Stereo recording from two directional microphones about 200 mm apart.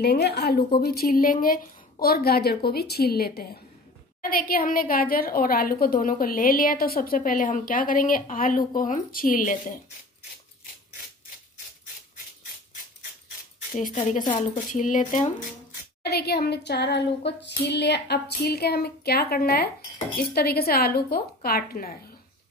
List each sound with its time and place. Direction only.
0.0 s a woman's voice: 55° left (ahead or behind)
14.7 s speech: 40° left (ahead or behind)
16.0 s child singing: 55° left (ahead or behind)
20.3 s a woman's voice: 50° left (ahead or behind)